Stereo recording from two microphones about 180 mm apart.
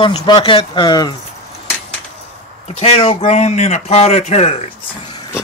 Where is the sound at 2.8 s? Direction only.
35° left (ahead or behind).